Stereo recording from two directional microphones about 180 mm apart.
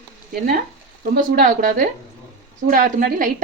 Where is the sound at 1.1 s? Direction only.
55° right (ahead or behind).